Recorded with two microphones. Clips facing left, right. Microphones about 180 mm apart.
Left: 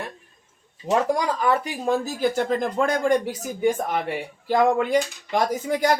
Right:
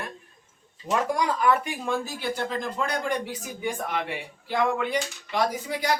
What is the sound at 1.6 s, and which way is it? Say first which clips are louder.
Speech: left 5 dB; 40° left (ahead or behind).